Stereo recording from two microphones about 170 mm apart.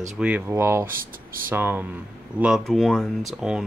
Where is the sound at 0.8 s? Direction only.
55° right (ahead or behind).